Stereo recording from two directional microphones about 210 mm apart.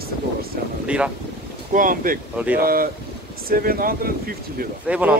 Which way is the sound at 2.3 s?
5° right (ahead or behind).